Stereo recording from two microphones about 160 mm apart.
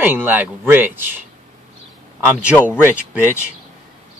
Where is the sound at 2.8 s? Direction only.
15° right (ahead or behind).